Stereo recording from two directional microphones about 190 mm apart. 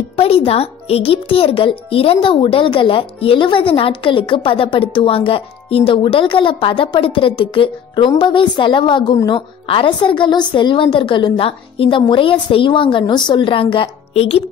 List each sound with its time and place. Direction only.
0.1 s a child's voice: 30° left (ahead or behind)